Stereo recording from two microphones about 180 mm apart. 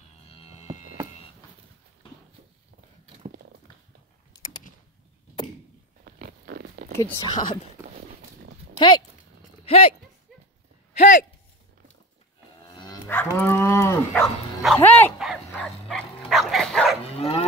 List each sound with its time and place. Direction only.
0.3 s cattle: 35° left (ahead or behind)
6.0 s a sound: 55° right (ahead or behind)
7.0 s speech: 20° left (ahead or behind)
8.7 s speech: 25° left (ahead or behind)
11.0 s speech: 45° left (ahead or behind)
12.6 s livestock: 20° left (ahead or behind)
13.4 s cattle: 10° left (ahead or behind)
14.2 s bow-wow: centre (ahead or behind)
14.8 s dog: 10° left (ahead or behind)
15.5 s bow-wow: centre (ahead or behind)
16.3 s dog: centre (ahead or behind)
17.0 s dog: 35° left (ahead or behind)